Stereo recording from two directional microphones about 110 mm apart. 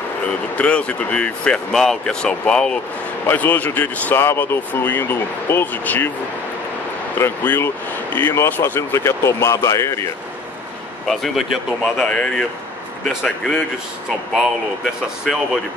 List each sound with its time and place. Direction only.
0.6 s speech: 10° left (ahead or behind)
7.2 s speech: 20° left (ahead or behind)
11.1 s speech: centre (ahead or behind)
15.3 s speech: centre (ahead or behind)